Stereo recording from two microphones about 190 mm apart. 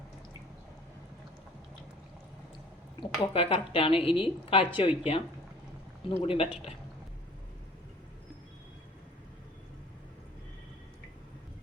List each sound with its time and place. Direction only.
3.0 s a woman's voice: 25° left (ahead or behind)
6.2 s a woman's voice: 30° left (ahead or behind)